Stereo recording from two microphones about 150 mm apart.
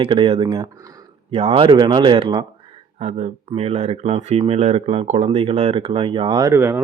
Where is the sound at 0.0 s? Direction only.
40° right (ahead or behind).